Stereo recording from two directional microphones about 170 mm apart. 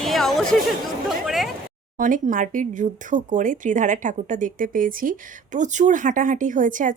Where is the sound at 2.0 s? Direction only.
50° right (ahead or behind).